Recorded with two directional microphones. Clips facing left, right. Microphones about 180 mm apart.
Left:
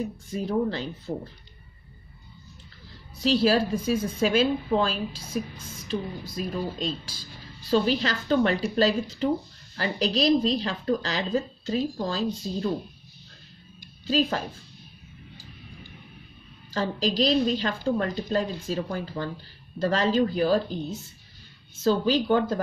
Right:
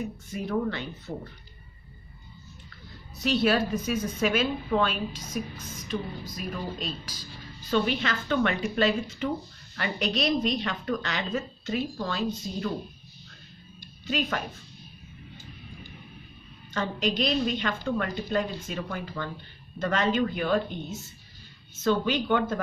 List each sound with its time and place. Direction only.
0.3 s speech: 30° left (ahead or behind)
3.2 s a woman's voice: 30° left (ahead or behind)
14.0 s speech: 30° left (ahead or behind)
16.7 s speech: 35° left (ahead or behind)